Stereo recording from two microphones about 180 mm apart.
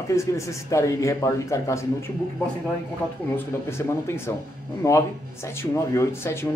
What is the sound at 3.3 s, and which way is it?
Speech, 15° left (ahead or behind).